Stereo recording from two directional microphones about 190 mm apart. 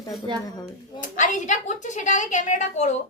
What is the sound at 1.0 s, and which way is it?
A woman's voice, 40° left (ahead or behind).